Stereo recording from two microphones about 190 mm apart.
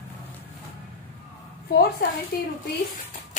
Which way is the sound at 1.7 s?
55° left (ahead or behind).